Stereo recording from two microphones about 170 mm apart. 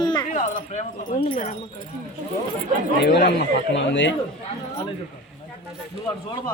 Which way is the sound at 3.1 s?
80° left.